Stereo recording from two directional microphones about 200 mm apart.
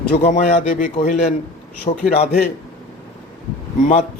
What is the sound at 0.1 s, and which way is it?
A man's voice, 40° left (ahead or behind).